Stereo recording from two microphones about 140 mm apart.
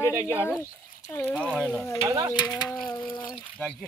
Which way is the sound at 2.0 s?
25° right (ahead or behind).